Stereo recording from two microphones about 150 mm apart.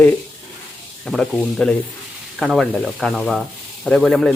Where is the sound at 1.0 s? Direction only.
Centre (ahead or behind).